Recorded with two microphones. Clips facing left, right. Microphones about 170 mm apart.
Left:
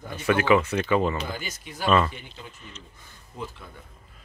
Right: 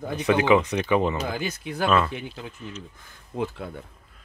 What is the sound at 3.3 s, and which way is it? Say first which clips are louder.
Speech: right 9 dB; 65° right (ahead or behind).